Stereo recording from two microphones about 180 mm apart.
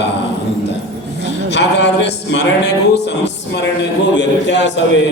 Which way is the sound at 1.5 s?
75° left (ahead or behind).